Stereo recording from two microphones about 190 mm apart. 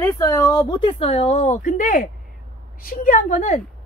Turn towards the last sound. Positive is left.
turn(degrees=40)  # may be behind; listen again after turning